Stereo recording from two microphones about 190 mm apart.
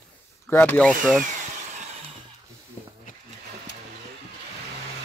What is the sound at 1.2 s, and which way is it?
Tools, 40° right (ahead or behind).